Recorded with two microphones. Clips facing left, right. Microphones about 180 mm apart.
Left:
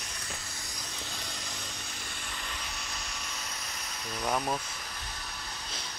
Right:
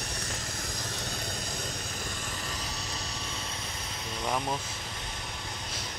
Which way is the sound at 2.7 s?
35° right (ahead or behind).